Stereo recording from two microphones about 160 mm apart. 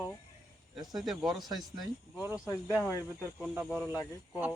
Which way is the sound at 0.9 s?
Centre (ahead or behind).